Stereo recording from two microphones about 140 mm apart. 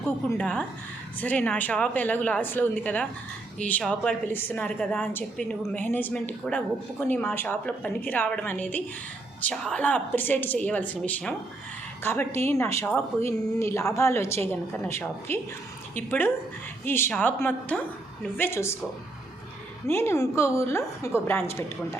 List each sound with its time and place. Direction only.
0.3 s a woman's voice: 5° left (ahead or behind)
19.9 s speech: 20° left (ahead or behind)